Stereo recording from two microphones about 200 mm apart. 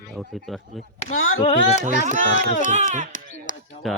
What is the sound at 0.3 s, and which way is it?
Speech, centre (ahead or behind).